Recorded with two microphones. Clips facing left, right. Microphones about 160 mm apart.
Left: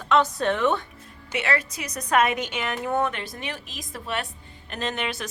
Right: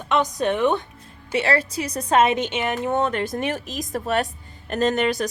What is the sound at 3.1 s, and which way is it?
Speech, 45° right (ahead or behind).